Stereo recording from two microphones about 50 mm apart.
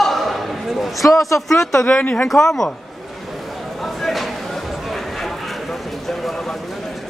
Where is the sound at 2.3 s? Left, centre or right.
Centre.